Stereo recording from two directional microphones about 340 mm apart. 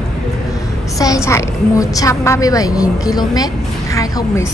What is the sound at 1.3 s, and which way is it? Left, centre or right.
A woman's voice, centre.